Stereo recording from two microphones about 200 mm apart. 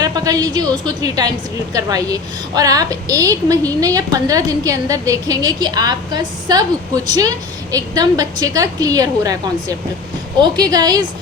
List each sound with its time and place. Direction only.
0.0 s a woman's voice: 20° right (ahead or behind)